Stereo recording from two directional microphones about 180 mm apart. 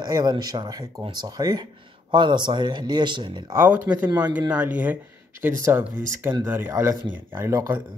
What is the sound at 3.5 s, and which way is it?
Speech, 10° right (ahead or behind).